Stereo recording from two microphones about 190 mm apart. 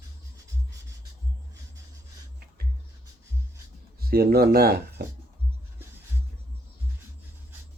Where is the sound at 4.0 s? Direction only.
55° right (ahead or behind).